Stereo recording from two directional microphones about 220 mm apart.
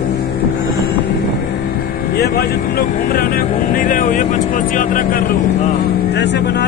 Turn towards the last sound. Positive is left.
turn(degrees=50)  # may be behind; listen again after turning